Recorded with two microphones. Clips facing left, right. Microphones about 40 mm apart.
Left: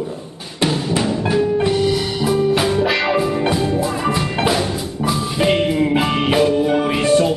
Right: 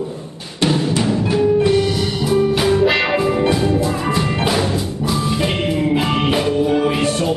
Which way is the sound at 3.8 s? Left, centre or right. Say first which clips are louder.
Even; centre.